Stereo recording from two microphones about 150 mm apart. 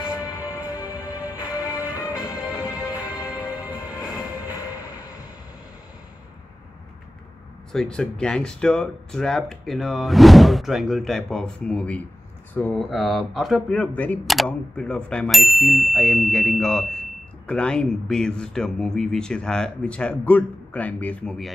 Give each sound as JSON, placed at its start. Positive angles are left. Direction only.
{"t": 0.0, "sound": "music", "side_deg": 25}
{"t": 7.7, "sound": "ding", "side_deg": 5}